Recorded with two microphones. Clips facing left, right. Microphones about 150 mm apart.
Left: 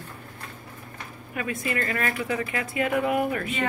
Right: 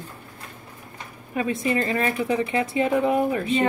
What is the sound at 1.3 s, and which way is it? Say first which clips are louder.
Speech: right 6 dB; 25° right (ahead or behind).